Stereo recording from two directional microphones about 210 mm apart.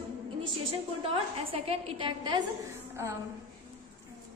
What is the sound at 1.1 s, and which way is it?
A woman's voice, 25° right (ahead or behind).